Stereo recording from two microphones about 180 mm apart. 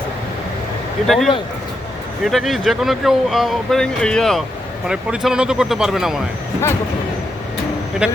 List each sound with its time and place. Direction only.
1.0 s speech: centre (ahead or behind)
8.0 s speech: 5° right (ahead or behind)